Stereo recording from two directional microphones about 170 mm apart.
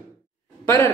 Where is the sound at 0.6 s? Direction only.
15° left (ahead or behind).